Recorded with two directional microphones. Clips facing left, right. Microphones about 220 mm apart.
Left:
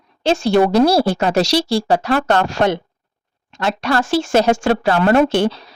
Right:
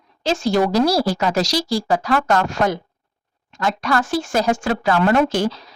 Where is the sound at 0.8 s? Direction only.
25° left (ahead or behind).